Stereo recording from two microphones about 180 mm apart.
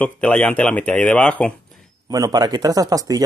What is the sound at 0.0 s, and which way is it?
Speech, 5° left (ahead or behind).